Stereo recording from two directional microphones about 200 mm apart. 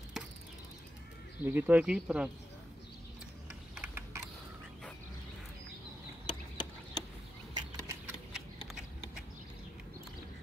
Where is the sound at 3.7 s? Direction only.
10° right (ahead or behind).